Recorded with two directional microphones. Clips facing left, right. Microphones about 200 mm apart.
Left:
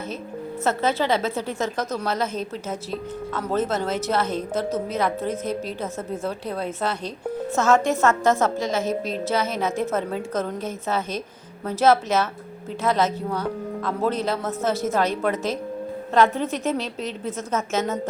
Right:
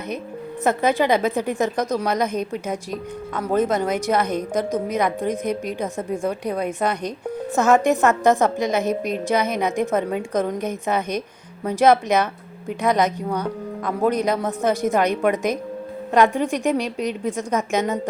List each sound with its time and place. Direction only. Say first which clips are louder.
0.6 s a woman's voice: right 4 dB; 15° right (ahead or behind)